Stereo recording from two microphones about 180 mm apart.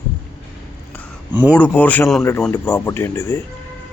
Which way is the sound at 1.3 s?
10° right (ahead or behind).